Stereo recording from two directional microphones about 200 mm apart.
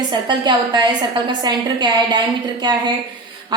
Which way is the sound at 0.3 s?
20° right (ahead or behind).